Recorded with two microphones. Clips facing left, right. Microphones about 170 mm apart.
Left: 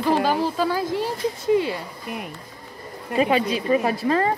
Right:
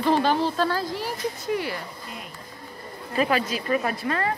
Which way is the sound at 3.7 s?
30° left (ahead or behind).